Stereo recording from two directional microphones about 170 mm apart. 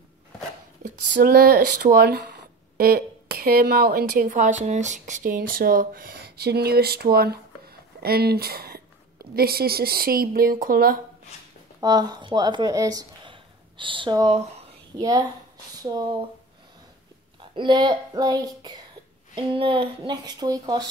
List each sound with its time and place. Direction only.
0.8 s speech: 55° right (ahead or behind)
11.8 s speech: 25° right (ahead or behind)
17.6 s speech: 25° right (ahead or behind)